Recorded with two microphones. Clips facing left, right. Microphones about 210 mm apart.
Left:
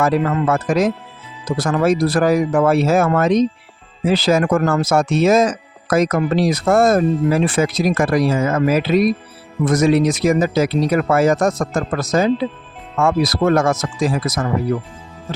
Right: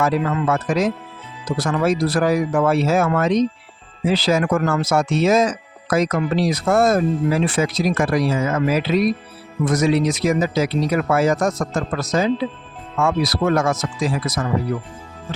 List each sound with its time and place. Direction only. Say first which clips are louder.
0.0 s speech: left 3 dB; 50° left (ahead or behind)